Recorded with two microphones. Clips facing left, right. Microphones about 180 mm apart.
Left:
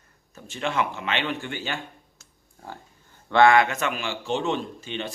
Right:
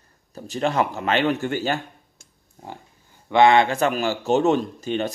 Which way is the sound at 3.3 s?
20° right (ahead or behind).